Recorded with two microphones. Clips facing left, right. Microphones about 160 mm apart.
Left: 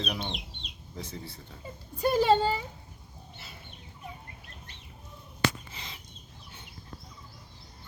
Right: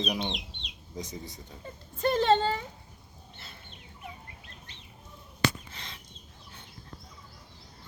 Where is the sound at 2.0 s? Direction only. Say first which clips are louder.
Left 1 dB; 10° left (ahead or behind).